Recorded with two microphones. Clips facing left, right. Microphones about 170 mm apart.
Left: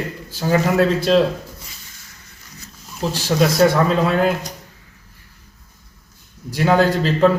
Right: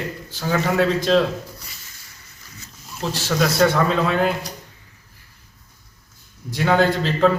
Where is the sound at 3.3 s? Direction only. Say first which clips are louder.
Left 3 dB; 35° left (ahead or behind).